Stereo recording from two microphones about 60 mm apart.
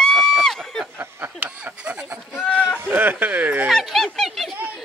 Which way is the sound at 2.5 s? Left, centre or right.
Left.